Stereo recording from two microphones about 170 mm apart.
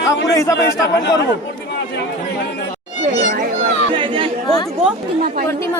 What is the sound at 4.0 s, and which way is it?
Chatter, 30° right (ahead or behind).